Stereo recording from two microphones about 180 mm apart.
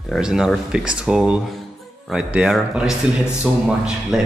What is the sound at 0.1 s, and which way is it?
Speech, 5° right (ahead or behind).